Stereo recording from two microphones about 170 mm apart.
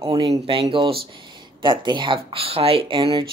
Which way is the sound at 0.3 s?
35° right (ahead or behind).